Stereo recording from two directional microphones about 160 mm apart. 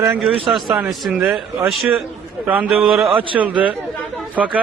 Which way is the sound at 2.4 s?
10° right (ahead or behind).